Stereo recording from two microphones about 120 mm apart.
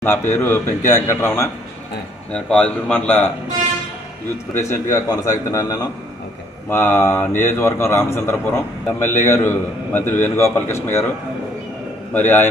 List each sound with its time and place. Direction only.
0.0 s a man's voice: 20° left (ahead or behind)
2.3 s a man's voice: 10° left (ahead or behind)
4.6 s a man's voice: 25° left (ahead or behind)
12.1 s a man's voice: 15° left (ahead or behind)